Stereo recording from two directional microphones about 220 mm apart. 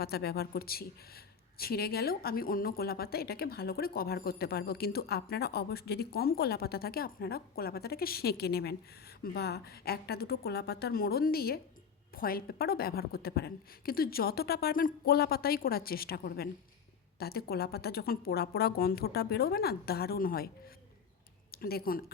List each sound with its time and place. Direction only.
0.0 s speech: 45° left (ahead or behind)
21.5 s speech: 45° left (ahead or behind)